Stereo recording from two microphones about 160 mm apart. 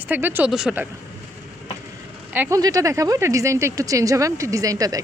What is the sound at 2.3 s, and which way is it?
Speech, 10° right (ahead or behind).